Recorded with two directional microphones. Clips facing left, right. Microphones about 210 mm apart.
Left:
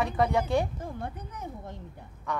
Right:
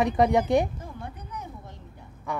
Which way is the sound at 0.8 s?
50° left (ahead or behind).